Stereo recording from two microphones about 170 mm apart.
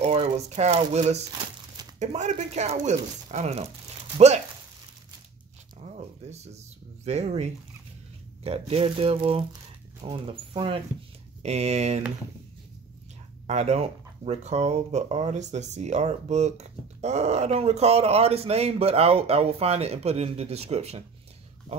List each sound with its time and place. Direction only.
0.0 s speech: 35° right (ahead or behind)
5.9 s a sound: 40° right (ahead or behind)
7.1 s speech: 40° right (ahead or behind)
13.5 s speech: 40° right (ahead or behind)